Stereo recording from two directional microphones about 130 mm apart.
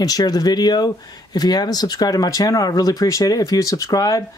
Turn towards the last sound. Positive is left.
turn(degrees=30)  # may be behind; listen again after turning